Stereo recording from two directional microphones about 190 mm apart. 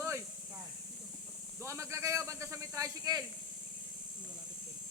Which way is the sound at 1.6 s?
15° right (ahead or behind).